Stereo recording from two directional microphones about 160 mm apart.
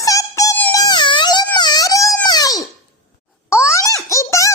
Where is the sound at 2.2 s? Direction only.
25° left (ahead or behind).